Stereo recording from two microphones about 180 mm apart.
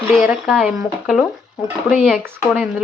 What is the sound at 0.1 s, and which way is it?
Speech, 5° right (ahead or behind).